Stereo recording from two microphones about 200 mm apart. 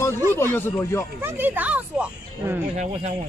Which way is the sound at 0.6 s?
10° left (ahead or behind).